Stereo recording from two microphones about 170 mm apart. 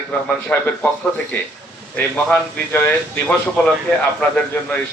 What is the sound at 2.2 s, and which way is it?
A man's voice, 10° left (ahead or behind).